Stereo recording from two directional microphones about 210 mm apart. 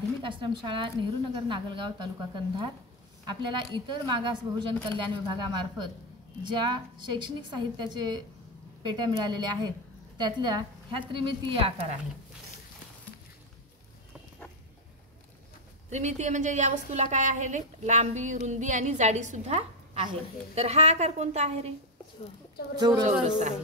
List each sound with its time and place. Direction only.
0.2 s a woman's voice: 25° right (ahead or behind)
15.9 s child singing: 35° right (ahead or behind)
22.8 s a woman's voice: 20° right (ahead or behind)